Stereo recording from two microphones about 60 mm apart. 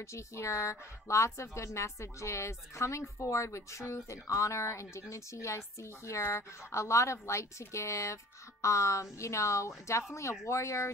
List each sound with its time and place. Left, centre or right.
0.0 s speech: left